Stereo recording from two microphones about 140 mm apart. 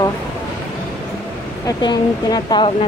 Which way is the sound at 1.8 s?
30° left (ahead or behind).